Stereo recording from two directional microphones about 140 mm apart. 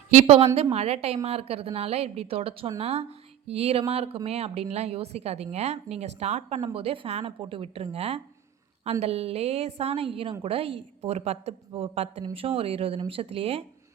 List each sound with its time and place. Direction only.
0.2 s speech: 45° right (ahead or behind)
6.7 s speech: 40° right (ahead or behind)